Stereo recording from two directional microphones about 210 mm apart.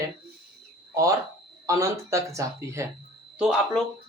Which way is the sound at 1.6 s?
15° right (ahead or behind).